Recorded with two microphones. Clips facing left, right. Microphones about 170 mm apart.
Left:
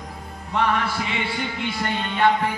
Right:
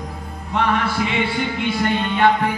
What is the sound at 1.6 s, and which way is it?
Music, 60° right (ahead or behind).